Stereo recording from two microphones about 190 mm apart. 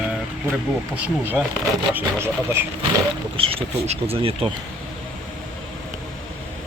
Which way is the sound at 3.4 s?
30° right (ahead or behind).